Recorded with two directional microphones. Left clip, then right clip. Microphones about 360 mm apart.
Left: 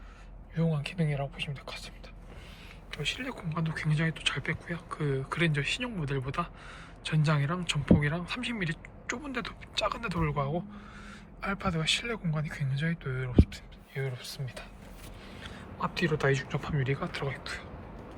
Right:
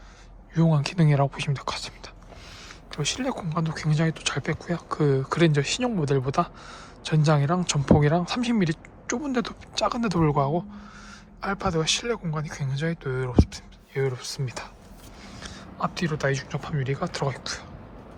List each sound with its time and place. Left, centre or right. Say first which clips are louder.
0.5 s speech: right 8 dB; centre